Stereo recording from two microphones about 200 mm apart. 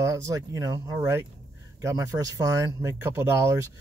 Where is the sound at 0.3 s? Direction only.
15° right (ahead or behind).